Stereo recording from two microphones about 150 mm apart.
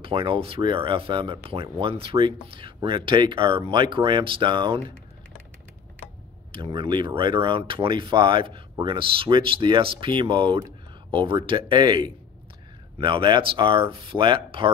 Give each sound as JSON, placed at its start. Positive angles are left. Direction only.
{"t": 0.0, "sound": "speech", "side_deg": -35}
{"t": 6.5, "sound": "speech", "side_deg": -35}